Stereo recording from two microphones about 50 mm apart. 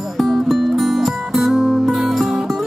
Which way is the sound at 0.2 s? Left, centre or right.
Centre.